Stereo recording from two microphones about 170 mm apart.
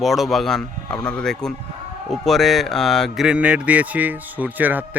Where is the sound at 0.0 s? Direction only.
Centre (ahead or behind).